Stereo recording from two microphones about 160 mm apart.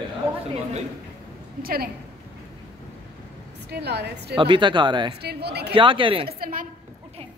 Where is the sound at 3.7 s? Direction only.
90° right.